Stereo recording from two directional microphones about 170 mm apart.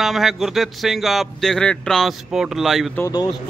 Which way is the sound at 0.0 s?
Centre (ahead or behind).